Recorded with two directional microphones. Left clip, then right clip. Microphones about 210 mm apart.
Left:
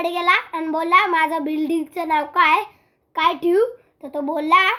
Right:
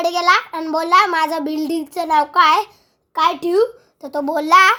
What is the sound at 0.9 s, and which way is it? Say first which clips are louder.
A child's voice: right 2 dB; 20° right (ahead or behind).